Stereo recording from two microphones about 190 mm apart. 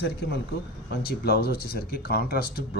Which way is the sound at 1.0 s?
55° left (ahead or behind).